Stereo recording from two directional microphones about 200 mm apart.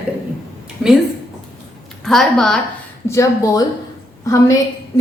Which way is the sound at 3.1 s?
15° left (ahead or behind).